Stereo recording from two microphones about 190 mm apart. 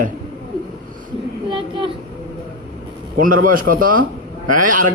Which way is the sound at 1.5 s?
25° right (ahead or behind).